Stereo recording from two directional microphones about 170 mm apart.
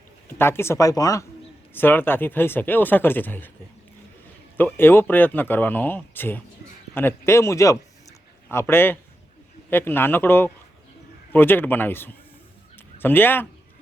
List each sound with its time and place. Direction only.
0.3 s speech: 15° left (ahead or behind)
4.5 s speech: 10° left (ahead or behind)